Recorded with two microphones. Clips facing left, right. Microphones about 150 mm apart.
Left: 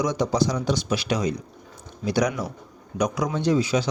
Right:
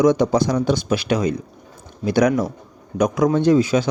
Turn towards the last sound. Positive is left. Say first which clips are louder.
# right 6 dB
turn(degrees=-50)  # may be behind; listen again after turning